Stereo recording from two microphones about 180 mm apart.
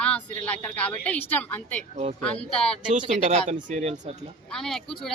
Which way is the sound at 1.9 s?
35° right (ahead or behind).